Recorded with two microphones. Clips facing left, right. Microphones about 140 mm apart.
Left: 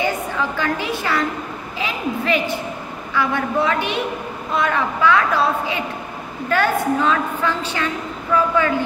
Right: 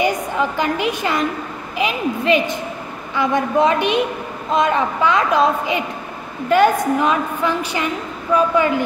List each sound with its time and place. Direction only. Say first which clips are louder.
0.0 s a woman's voice: right 3 dB; 15° right (ahead or behind)